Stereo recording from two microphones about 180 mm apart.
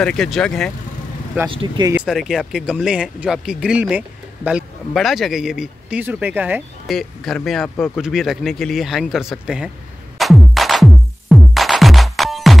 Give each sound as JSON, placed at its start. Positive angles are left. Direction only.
{"t": 0.0, "sound": "speech", "side_deg": 0}
{"t": 1.5, "sound": "speech", "side_deg": -30}
{"t": 1.9, "sound": "speech", "side_deg": -5}
{"t": 6.9, "sound": "speech", "side_deg": 0}
{"t": 10.1, "sound": "music", "side_deg": 0}